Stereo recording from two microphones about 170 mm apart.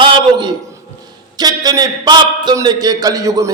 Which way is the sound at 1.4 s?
25° right (ahead or behind).